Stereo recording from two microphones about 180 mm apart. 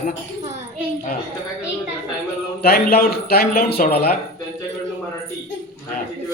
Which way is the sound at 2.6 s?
60° left (ahead or behind).